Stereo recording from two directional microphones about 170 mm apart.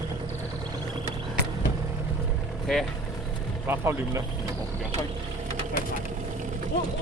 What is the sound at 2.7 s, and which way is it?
Speech, centre (ahead or behind).